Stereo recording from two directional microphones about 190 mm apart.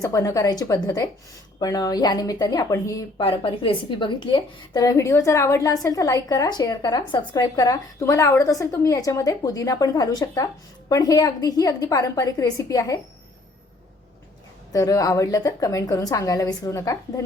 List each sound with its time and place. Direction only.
0.0 s a woman's voice: 15° left (ahead or behind)
3.2 s a woman's voice: 30° left (ahead or behind)
14.7 s a woman's voice: 20° left (ahead or behind)